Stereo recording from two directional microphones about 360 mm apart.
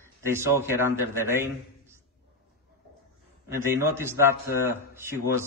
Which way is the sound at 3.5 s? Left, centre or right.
Centre.